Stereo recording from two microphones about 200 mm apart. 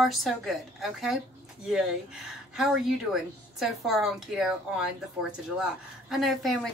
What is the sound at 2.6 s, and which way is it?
A woman's voice, centre (ahead or behind).